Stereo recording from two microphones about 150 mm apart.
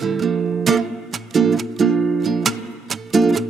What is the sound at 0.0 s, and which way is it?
Music, centre (ahead or behind).